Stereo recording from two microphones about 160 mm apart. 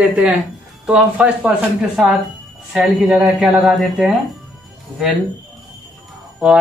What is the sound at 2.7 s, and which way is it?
Speech, centre (ahead or behind).